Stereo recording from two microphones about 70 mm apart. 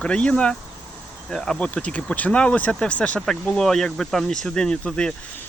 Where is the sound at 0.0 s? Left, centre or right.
Centre.